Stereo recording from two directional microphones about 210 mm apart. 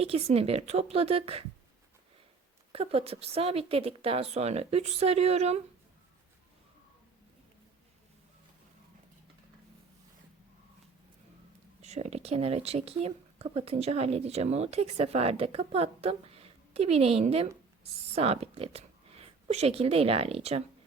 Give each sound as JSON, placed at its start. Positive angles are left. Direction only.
{"t": 0.0, "sound": "speech", "side_deg": -30}
{"t": 2.7, "sound": "speech", "side_deg": -30}
{"t": 11.8, "sound": "speech", "side_deg": -30}